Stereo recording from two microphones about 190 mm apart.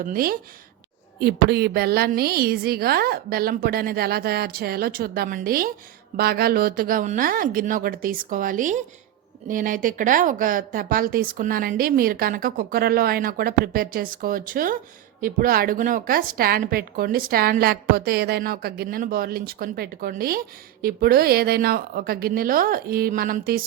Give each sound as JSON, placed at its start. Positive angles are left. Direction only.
{"t": 0.0, "sound": "a woman's voice", "side_deg": -50}